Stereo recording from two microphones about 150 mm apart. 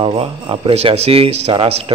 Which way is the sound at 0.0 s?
35° right (ahead or behind).